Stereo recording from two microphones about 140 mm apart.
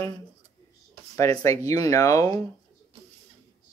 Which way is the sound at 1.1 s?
20° left (ahead or behind).